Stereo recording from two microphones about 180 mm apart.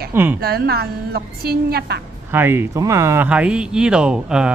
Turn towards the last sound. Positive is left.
turn(degrees=-5)  # may be behind; listen again after turning